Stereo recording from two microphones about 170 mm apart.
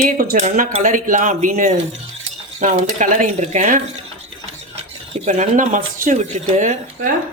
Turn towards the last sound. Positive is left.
turn(degrees=-45)  # may be behind; listen again after turning